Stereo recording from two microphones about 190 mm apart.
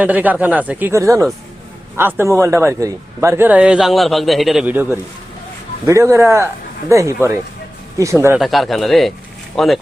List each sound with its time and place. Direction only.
0.0 s a man's voice: 10° right (ahead or behind)
8.4 s speech: centre (ahead or behind)